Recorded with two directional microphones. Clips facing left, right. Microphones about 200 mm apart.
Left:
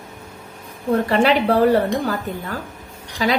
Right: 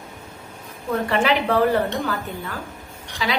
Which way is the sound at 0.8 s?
35° left (ahead or behind).